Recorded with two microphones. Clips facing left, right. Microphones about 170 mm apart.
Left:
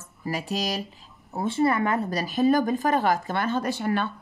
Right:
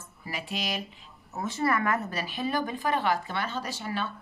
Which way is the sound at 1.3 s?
30° left (ahead or behind).